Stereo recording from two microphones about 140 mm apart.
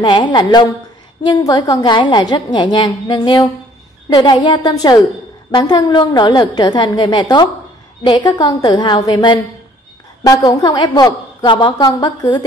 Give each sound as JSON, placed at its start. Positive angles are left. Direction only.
{"t": 0.0, "sound": "a woman's voice", "side_deg": 30}